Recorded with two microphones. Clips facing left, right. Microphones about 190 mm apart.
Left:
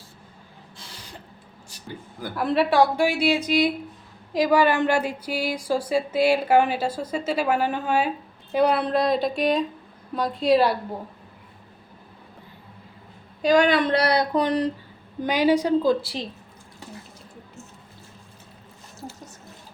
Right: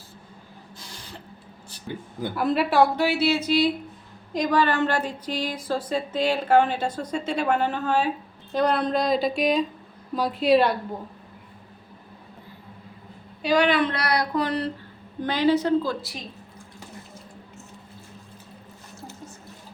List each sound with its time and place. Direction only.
2.3 s speech: centre (ahead or behind)
3.0 s a woman's voice: 15° left (ahead or behind)
13.4 s a woman's voice: 45° left (ahead or behind); by 16.0 s 15° left (ahead or behind)
16.0 s a woman's voice: 30° left (ahead or behind)